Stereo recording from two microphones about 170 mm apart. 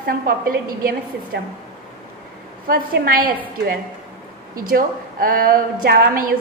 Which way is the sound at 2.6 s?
60° right (ahead or behind).